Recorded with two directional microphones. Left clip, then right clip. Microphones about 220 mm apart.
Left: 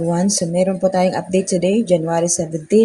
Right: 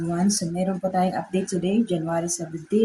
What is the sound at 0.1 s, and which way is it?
Speech, 20° left (ahead or behind).